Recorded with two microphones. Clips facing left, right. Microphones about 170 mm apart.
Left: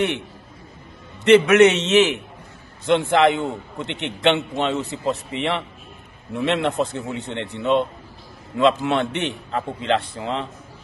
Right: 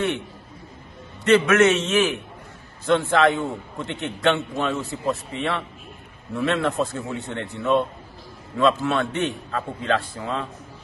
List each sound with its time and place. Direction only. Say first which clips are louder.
1.2 s a man's voice: left 4 dB; 20° left (ahead or behind)